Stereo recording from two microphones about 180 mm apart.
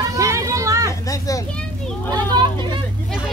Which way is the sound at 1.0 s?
20° left (ahead or behind).